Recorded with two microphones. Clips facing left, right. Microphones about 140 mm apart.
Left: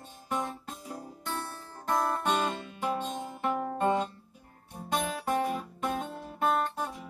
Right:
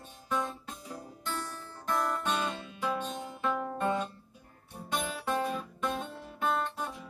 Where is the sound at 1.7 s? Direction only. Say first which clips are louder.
Left 3 dB; 45° left (ahead or behind).